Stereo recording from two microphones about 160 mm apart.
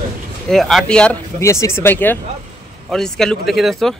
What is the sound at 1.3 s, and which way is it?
Speech, 15° left (ahead or behind).